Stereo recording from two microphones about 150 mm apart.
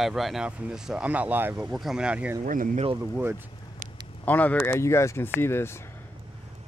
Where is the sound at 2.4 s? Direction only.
60° right (ahead or behind).